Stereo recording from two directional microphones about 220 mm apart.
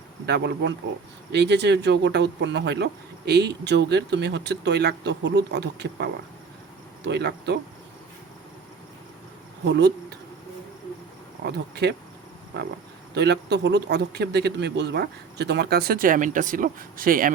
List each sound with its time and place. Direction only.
0.3 s speech: 50° right (ahead or behind)
9.6 s speech: 50° right (ahead or behind)
11.4 s speech: 45° right (ahead or behind)